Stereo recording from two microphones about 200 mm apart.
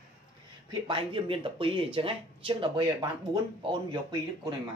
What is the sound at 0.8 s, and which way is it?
Speech, 25° right (ahead or behind).